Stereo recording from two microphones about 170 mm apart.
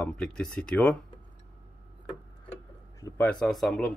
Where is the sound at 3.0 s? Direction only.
10° left (ahead or behind).